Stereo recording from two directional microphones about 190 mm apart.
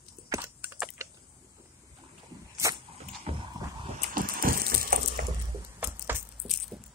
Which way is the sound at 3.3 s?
25° right (ahead or behind).